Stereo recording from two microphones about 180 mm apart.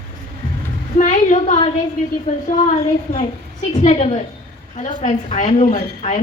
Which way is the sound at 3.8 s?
35° left (ahead or behind).